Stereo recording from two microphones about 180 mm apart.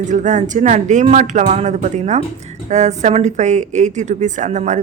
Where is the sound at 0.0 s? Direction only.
45° right (ahead or behind).